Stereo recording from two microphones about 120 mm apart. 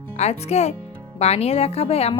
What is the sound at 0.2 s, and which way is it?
A woman's voice, 65° left (ahead or behind).